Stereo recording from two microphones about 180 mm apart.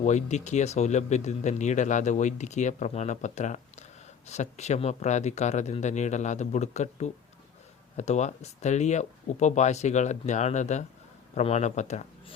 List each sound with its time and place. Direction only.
0.0 s speech: 40° left (ahead or behind)